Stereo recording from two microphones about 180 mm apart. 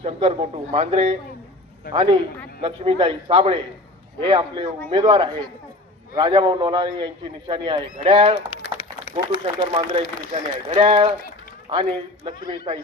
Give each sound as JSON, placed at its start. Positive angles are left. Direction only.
{"t": 0.0, "sound": "a man's voice", "side_deg": -35}